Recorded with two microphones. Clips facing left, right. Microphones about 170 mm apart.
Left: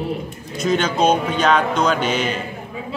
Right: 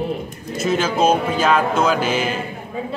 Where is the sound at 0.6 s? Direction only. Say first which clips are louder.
Even; 5° right (ahead or behind).